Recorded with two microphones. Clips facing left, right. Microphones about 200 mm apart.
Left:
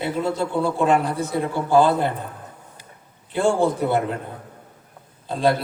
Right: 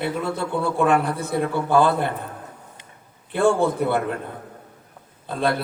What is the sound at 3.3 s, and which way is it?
Speech, 60° right (ahead or behind).